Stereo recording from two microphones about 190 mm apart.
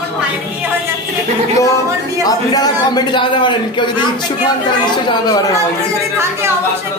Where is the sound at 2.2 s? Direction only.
20° left (ahead or behind).